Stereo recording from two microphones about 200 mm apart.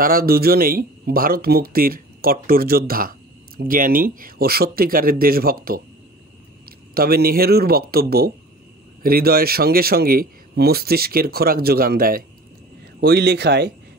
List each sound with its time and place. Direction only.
0.0 s speech: 45° right (ahead or behind)
6.9 s speech: 50° right (ahead or behind)